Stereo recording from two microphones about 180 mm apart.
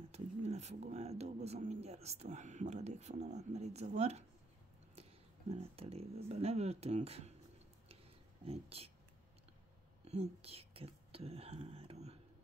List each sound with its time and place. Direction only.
0.1 s speech: 35° right (ahead or behind)
5.5 s speech: 35° right (ahead or behind)
8.5 s speech: 35° right (ahead or behind)
10.0 s speech: 35° right (ahead or behind)